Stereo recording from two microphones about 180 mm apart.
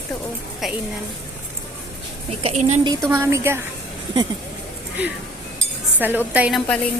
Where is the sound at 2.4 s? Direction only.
35° right (ahead or behind).